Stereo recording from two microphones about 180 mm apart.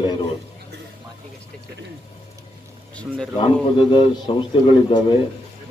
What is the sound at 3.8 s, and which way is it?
Speech, 25° left (ahead or behind).